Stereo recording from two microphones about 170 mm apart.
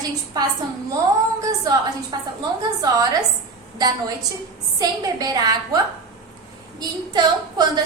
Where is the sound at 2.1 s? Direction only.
25° right (ahead or behind).